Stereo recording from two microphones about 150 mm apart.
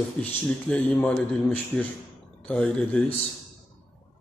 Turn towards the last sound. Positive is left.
turn(degrees=5)  # may be behind; listen again after turning